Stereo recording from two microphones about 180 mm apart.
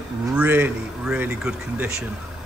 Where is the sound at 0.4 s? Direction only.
10° right (ahead or behind).